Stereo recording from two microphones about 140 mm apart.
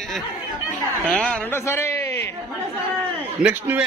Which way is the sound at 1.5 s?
20° left (ahead or behind).